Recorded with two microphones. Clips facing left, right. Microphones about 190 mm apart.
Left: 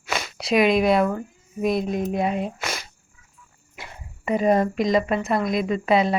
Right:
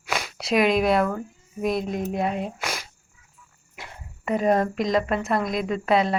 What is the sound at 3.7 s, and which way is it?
Speech, centre (ahead or behind).